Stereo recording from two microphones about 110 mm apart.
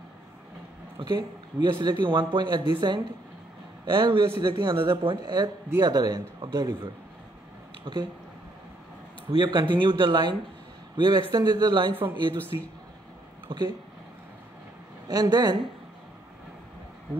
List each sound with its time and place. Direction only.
0.9 s speech: 45° right (ahead or behind)
3.8 s a man's voice: 45° right (ahead or behind)
9.3 s speech: 45° right (ahead or behind)
11.9 s speech: 20° right (ahead or behind)
12.5 s a man's voice: 35° right (ahead or behind)
13.5 s speech: 45° right (ahead or behind)
15.0 s a man's voice: 40° right (ahead or behind)